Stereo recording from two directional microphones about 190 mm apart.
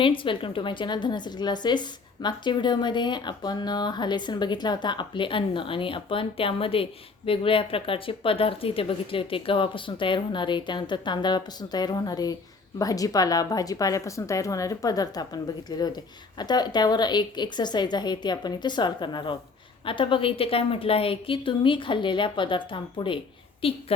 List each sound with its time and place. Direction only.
0.0 s a woman's voice: 25° left (ahead or behind)